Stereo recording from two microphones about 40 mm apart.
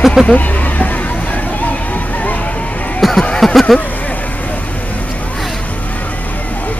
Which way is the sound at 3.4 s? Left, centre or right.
Centre.